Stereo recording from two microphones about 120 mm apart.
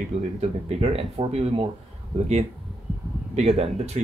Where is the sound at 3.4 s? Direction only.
55° right (ahead or behind).